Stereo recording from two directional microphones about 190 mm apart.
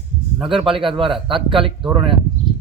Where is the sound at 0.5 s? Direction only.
25° right (ahead or behind).